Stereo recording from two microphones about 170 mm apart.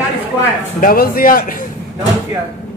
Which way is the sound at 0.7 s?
60° left (ahead or behind).